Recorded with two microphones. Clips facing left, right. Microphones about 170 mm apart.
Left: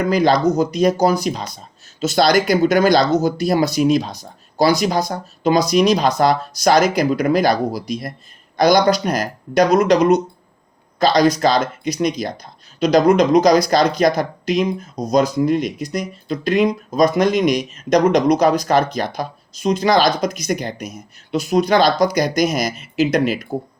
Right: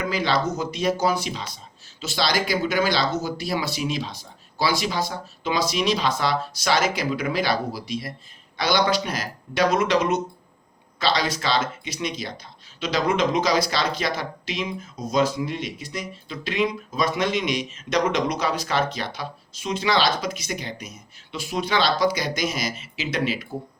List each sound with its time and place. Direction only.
0.0 s speech: 40° left (ahead or behind)